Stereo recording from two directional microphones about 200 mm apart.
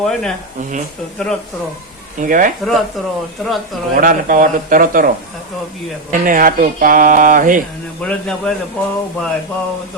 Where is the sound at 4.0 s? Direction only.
40° right (ahead or behind).